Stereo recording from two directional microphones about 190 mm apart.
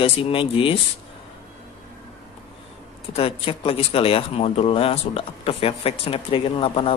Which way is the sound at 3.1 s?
30° left (ahead or behind).